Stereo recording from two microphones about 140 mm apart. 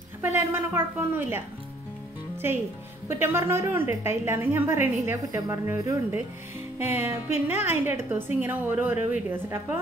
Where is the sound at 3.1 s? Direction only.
20° right (ahead or behind).